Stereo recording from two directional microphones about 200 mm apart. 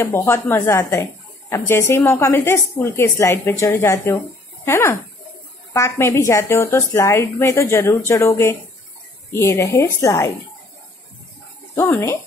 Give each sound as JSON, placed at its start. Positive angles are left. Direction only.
{"t": 0.0, "sound": "a woman's voice", "side_deg": 10}
{"t": 11.7, "sound": "a woman's voice", "side_deg": 15}